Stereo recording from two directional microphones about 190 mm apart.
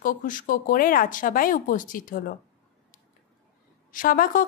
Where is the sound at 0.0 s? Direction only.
45° left (ahead or behind).